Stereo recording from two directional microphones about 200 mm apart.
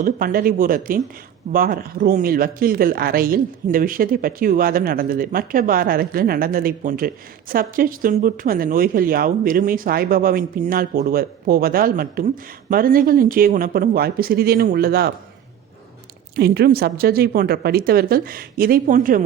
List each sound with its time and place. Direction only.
0.0 s speech: 45° right (ahead or behind)
16.3 s speech: 50° right (ahead or behind)